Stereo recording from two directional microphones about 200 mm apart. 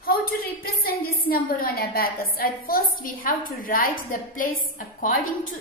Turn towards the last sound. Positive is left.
turn(degrees=45)  # may be behind; listen again after turning